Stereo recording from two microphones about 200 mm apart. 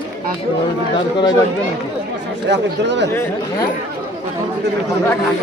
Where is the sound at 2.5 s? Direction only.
60° right (ahead or behind).